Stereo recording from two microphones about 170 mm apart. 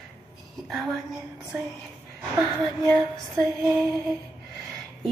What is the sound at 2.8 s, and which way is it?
Female singing, 5° left (ahead or behind).